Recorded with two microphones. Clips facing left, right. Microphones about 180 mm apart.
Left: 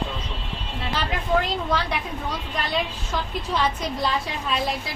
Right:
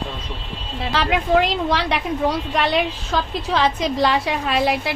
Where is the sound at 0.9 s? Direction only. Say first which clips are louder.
Right 6 dB; 90° right.